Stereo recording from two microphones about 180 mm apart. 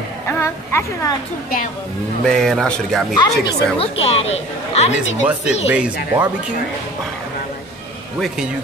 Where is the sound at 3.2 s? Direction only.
25° left (ahead or behind).